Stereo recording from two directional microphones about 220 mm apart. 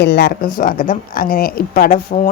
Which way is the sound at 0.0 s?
50° left (ahead or behind).